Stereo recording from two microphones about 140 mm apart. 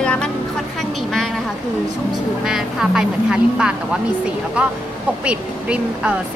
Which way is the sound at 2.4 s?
5° right (ahead or behind).